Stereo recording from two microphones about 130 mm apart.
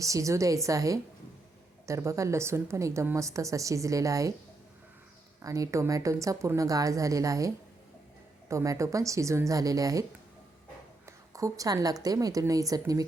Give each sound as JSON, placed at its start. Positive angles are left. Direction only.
{"t": 0.0, "sound": "speech", "side_deg": -25}
{"t": 5.4, "sound": "a woman's voice", "side_deg": -25}